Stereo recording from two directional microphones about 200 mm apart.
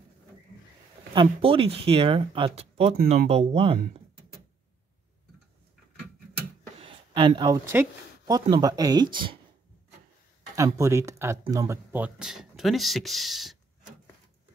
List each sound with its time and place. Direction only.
1.1 s speech: 25° right (ahead or behind)
6.8 s speech: 25° right (ahead or behind)
10.5 s speech: 15° right (ahead or behind)